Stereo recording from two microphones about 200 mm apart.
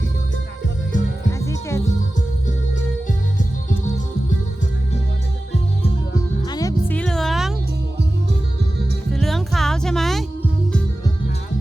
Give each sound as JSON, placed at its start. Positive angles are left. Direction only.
{"t": 1.3, "sound": "music", "side_deg": 15}
{"t": 6.4, "sound": "music", "side_deg": 20}
{"t": 6.9, "sound": "music", "side_deg": 5}
{"t": 9.1, "sound": "music", "side_deg": 0}